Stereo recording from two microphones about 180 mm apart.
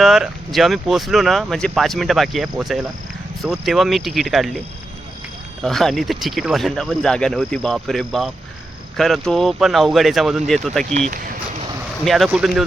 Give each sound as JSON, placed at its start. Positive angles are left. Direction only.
{"t": 0.0, "sound": "speech", "side_deg": 0}
{"t": 5.6, "sound": "speech", "side_deg": 0}
{"t": 10.8, "sound": "speech", "side_deg": -40}
{"t": 12.0, "sound": "speech", "side_deg": 0}